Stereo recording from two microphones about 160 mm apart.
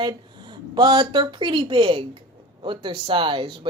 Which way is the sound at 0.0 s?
30° right (ahead or behind).